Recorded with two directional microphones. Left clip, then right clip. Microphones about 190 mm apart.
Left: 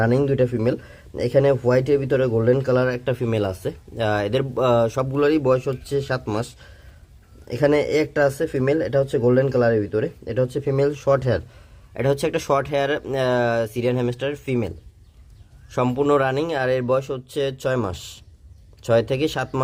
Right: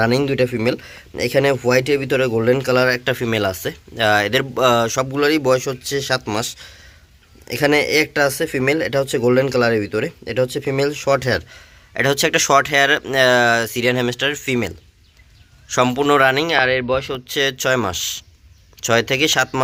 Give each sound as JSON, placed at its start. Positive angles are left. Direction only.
{"t": 0.0, "sound": "speech", "side_deg": 0}
{"t": 15.7, "sound": "speech", "side_deg": 0}